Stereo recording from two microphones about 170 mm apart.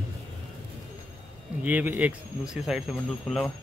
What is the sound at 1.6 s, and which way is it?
A man's voice, 10° right (ahead or behind).